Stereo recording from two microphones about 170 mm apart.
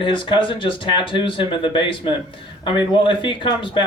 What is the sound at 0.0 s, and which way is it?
Speech, 30° left (ahead or behind).